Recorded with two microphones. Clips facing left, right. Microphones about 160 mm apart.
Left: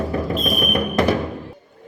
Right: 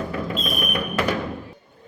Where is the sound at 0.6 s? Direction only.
40° left (ahead or behind).